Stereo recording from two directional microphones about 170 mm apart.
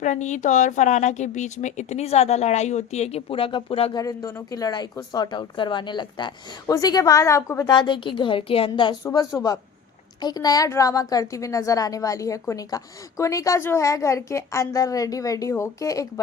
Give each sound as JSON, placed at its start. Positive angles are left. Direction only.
{"t": 0.0, "sound": "a woman's voice", "side_deg": 45}
{"t": 4.0, "sound": "a woman's voice", "side_deg": 20}
{"t": 9.3, "sound": "a woman's voice", "side_deg": 15}